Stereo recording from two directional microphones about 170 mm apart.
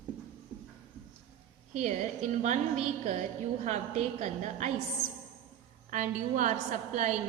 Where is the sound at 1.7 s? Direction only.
45° right (ahead or behind).